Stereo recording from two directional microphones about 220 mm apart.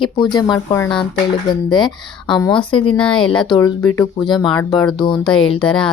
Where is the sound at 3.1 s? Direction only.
20° left (ahead or behind).